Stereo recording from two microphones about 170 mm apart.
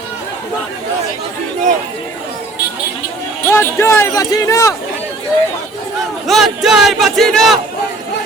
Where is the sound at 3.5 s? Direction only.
15° left (ahead or behind).